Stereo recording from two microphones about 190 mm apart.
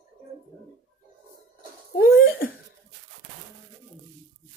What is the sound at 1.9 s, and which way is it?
Laughter, 55° left (ahead or behind).